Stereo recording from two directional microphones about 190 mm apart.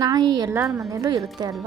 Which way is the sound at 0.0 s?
20° right (ahead or behind).